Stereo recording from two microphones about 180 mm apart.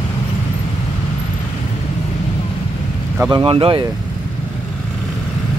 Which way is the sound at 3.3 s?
25° right (ahead or behind).